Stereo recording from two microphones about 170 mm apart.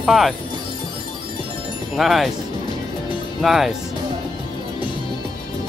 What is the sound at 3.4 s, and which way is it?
Speech, centre (ahead or behind).